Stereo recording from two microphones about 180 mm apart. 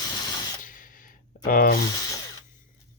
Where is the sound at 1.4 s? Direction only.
50° left (ahead or behind).